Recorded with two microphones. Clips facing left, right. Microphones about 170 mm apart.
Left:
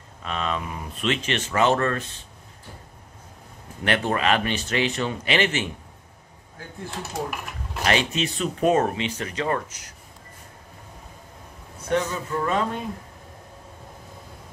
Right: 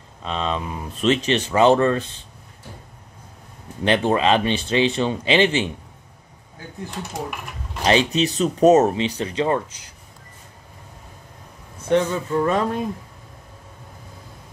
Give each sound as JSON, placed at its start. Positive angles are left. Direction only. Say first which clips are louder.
{"t": 0.2, "sound": "speech", "louder": "right 3 dB", "side_deg": -25}
{"t": 3.8, "sound": "speech", "louder": "right 5 dB", "side_deg": -25}
{"t": 7.0, "sound": "speech", "louder": "even", "side_deg": 5}
{"t": 7.8, "sound": "speech", "louder": "right 5 dB", "side_deg": -30}
{"t": 8.7, "sound": "speech", "louder": "right 6 dB", "side_deg": -30}
{"t": 11.9, "sound": "speech", "louder": "right 5 dB", "side_deg": -30}